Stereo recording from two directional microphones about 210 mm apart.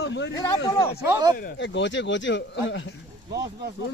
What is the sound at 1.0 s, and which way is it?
Speech, 20° right (ahead or behind).